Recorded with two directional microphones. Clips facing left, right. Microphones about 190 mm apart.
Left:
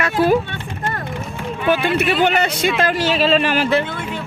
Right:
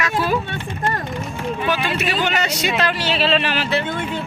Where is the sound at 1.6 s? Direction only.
55° left (ahead or behind).